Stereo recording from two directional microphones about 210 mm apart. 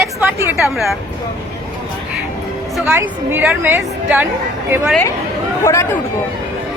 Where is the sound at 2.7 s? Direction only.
5° right (ahead or behind).